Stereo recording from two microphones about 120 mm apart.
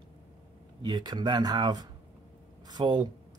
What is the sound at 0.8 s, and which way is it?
Speech, 35° right (ahead or behind).